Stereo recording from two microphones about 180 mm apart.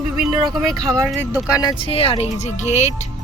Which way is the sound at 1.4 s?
20° left (ahead or behind).